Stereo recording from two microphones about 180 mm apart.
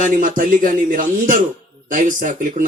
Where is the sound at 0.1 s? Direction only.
50° right (ahead or behind).